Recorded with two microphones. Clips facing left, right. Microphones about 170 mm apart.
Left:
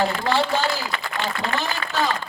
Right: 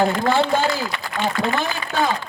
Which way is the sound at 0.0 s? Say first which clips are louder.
Right 3 dB; 50° right (ahead or behind).